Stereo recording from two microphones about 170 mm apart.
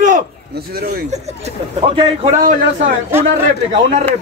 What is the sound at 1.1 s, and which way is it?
Speech, 40° right (ahead or behind).